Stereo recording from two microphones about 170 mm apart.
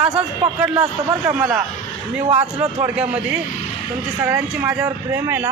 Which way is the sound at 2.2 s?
40° right (ahead or behind).